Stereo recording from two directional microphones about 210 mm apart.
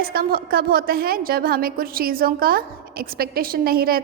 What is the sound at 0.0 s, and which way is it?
A woman's voice, 45° right (ahead or behind).